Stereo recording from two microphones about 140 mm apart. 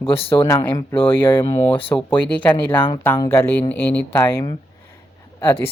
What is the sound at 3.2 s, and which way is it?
Speech, 15° left (ahead or behind).